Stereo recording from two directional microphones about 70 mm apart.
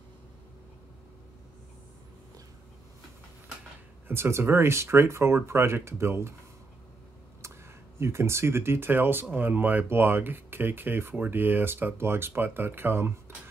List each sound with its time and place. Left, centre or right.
4.1 s speech: right
8.0 s speech: right